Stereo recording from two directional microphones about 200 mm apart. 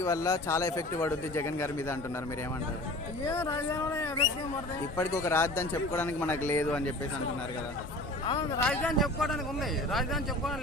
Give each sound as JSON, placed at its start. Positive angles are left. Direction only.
{"t": 0.0, "sound": "speech", "side_deg": 15}
{"t": 3.2, "sound": "speech", "side_deg": 15}
{"t": 8.5, "sound": "a man's voice", "side_deg": 5}